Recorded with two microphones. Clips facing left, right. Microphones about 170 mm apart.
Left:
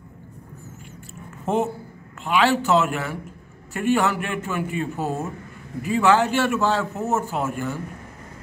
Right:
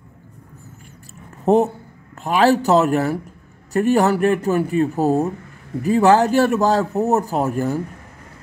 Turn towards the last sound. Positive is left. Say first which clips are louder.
# right 6 dB
turn(degrees=-35)  # may be behind; listen again after turning